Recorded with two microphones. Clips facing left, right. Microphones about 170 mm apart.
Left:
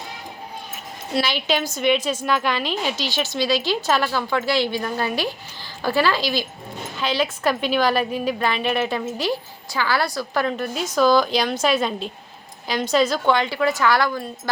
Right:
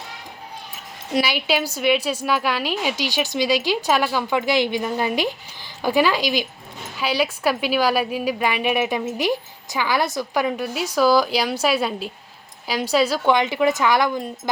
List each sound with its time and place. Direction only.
1.1 s a woman's voice: 10° right (ahead or behind)